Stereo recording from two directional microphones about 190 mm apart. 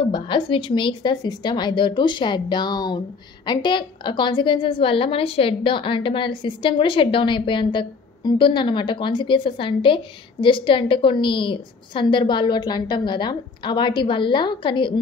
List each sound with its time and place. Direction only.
0.1 s a woman's voice: 25° left (ahead or behind)